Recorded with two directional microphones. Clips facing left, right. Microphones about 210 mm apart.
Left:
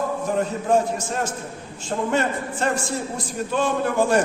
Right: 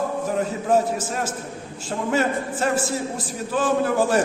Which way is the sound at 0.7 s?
5° right (ahead or behind).